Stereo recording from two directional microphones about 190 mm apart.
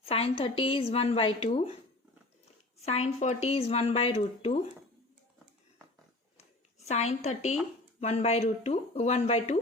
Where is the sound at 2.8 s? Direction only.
35° left (ahead or behind).